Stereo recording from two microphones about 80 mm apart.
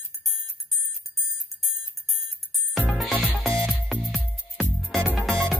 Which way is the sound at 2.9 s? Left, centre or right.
Centre.